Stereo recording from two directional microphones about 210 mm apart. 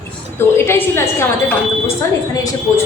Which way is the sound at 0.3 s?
10° left (ahead or behind).